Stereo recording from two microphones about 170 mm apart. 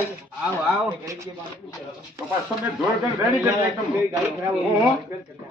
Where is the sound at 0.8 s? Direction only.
20° right (ahead or behind).